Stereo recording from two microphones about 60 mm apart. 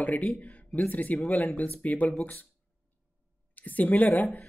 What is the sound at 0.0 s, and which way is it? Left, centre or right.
Speech, left.